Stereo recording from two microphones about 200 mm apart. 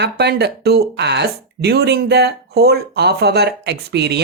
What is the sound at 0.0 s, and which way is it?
Speech, 55° right (ahead or behind).